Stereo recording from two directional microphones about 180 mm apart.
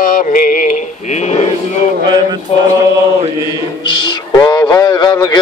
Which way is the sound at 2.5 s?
35° left (ahead or behind).